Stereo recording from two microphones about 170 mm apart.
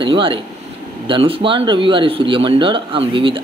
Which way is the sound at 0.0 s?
30° right (ahead or behind).